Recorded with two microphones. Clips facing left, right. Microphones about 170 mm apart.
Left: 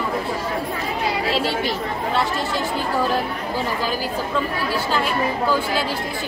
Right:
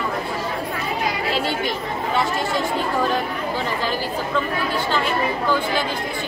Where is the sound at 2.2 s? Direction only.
Centre (ahead or behind).